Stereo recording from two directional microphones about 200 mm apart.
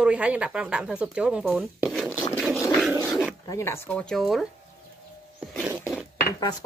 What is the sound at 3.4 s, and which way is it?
Dishes, 15° left (ahead or behind).